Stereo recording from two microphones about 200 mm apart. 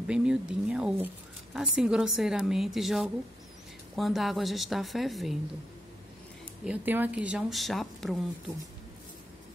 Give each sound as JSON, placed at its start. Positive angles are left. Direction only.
{"t": 0.0, "sound": "speech", "side_deg": -5}
{"t": 6.6, "sound": "speech", "side_deg": -5}